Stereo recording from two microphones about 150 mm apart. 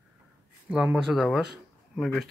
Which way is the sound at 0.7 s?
5° right (ahead or behind).